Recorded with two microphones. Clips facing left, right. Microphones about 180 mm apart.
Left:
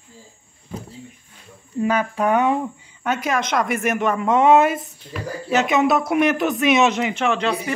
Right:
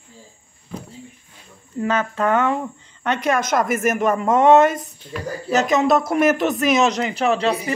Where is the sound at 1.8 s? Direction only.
15° left (ahead or behind).